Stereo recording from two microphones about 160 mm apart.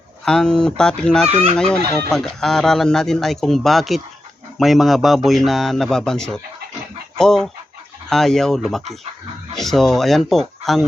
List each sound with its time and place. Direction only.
0.3 s a man's voice: 5° left (ahead or behind)
1.3 s fowl: 40° right (ahead or behind)
1.5 s a man's voice: 5° left (ahead or behind)
1.9 s chicken: 20° left (ahead or behind)
2.1 s a man's voice: 5° left (ahead or behind)